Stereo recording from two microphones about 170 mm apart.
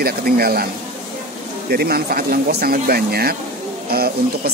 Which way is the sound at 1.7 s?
65° right (ahead or behind).